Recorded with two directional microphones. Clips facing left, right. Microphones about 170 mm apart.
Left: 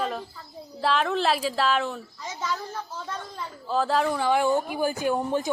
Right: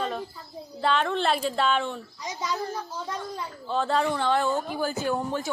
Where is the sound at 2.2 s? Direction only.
15° right (ahead or behind).